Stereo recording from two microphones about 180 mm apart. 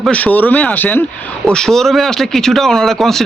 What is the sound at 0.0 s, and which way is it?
Speech, 5° left (ahead or behind).